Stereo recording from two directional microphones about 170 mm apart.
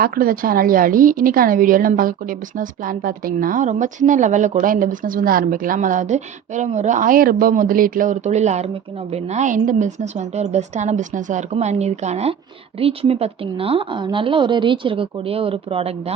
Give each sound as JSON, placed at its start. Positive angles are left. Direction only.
{"t": 0.0, "sound": "a woman's voice", "side_deg": -55}